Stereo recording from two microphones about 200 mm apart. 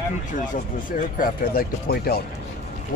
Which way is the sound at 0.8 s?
45° left (ahead or behind).